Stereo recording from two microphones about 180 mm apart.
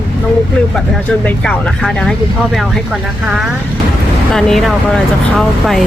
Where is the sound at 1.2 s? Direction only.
5° left (ahead or behind).